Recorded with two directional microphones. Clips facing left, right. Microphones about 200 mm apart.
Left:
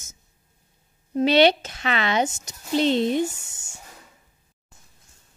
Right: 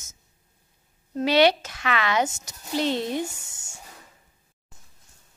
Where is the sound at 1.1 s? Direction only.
25° left (ahead or behind).